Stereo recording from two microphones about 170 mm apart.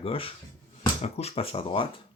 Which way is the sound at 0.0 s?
35° left (ahead or behind).